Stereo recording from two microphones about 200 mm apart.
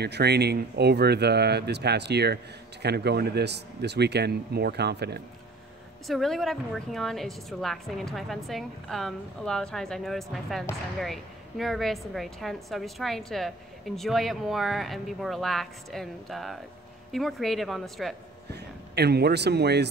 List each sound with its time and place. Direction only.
0.0 s speech: 55° right (ahead or behind)
6.0 s a woman's voice: centre (ahead or behind)
18.5 s a man's voice: 55° right (ahead or behind)